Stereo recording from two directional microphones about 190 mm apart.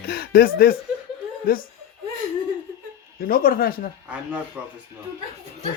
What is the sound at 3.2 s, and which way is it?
Speech, 50° left (ahead or behind).